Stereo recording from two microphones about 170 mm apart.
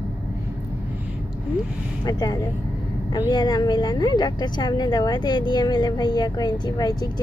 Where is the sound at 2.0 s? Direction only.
25° left (ahead or behind).